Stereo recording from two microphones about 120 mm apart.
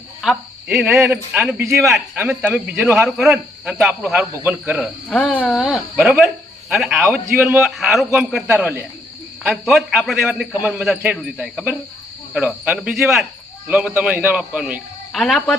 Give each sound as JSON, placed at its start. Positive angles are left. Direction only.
{"t": 0.2, "sound": "a man's voice", "side_deg": -5}
{"t": 3.1, "sound": "a man's voice", "side_deg": -5}
{"t": 5.0, "sound": "speech", "side_deg": 10}
{"t": 8.5, "sound": "a man's voice", "side_deg": -15}
{"t": 9.4, "sound": "a man's voice", "side_deg": -5}
{"t": 15.1, "sound": "a man's voice", "side_deg": 0}